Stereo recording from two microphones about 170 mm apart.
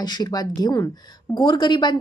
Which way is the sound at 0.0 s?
25° left (ahead or behind).